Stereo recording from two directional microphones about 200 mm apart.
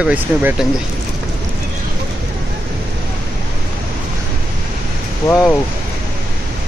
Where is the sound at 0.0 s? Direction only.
10° right (ahead or behind).